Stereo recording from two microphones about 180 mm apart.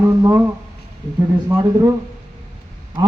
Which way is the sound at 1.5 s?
15° right (ahead or behind).